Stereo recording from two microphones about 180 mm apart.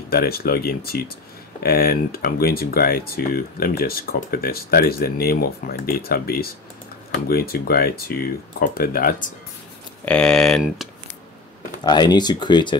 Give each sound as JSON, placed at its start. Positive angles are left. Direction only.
{"t": 0.1, "sound": "speech", "side_deg": 60}
{"t": 10.0, "sound": "speech", "side_deg": 5}
{"t": 11.8, "sound": "speech", "side_deg": 25}